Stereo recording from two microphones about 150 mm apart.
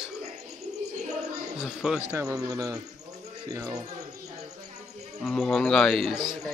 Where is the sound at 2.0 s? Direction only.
15° right (ahead or behind).